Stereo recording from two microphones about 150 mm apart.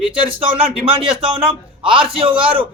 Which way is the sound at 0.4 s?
40° right (ahead or behind).